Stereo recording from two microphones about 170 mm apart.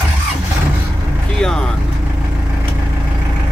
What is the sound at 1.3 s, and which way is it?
Speech, 5° left (ahead or behind).